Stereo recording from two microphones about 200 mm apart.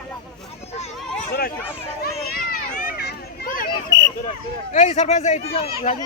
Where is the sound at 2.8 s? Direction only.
45° left (ahead or behind).